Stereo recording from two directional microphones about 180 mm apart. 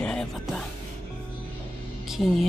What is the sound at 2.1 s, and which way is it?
Speech, centre (ahead or behind).